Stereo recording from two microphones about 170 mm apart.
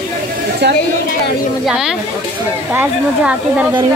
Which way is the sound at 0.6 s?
80° right.